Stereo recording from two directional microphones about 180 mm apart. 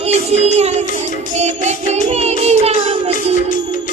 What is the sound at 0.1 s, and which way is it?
Child singing, 35° right (ahead or behind).